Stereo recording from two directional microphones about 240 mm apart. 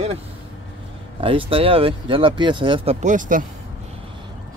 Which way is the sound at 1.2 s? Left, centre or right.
Right.